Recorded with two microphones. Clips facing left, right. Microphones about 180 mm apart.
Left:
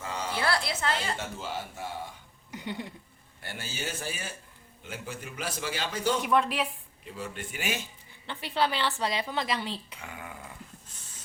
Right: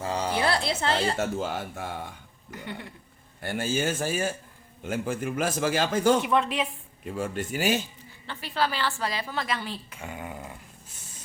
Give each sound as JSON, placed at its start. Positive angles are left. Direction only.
{"t": 0.0, "sound": "music", "side_deg": -35}
{"t": 0.3, "sound": "speech", "side_deg": -20}
{"t": 3.4, "sound": "a man's voice", "side_deg": -50}
{"t": 6.2, "sound": "speech", "side_deg": 0}
{"t": 7.0, "sound": "speech", "side_deg": -50}
{"t": 8.3, "sound": "a woman's voice", "side_deg": 20}
{"t": 10.0, "sound": "a sound", "side_deg": -25}